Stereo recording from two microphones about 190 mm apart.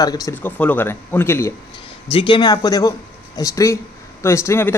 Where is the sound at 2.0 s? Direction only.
25° left (ahead or behind).